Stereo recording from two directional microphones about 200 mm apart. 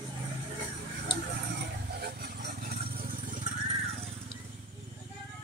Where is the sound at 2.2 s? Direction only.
40° right (ahead or behind).